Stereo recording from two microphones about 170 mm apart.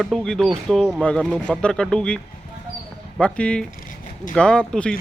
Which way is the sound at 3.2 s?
5° left (ahead or behind).